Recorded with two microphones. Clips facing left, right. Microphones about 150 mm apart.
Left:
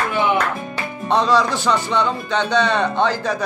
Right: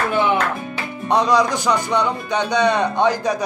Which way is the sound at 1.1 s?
15° right (ahead or behind).